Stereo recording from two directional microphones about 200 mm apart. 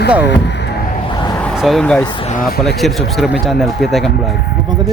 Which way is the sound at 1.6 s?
Centre (ahead or behind).